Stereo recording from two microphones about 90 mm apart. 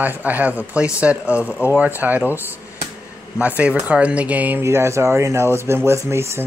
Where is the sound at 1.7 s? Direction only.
20° right (ahead or behind).